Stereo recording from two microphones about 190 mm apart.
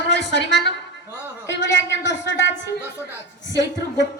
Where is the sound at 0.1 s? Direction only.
65° left (ahead or behind).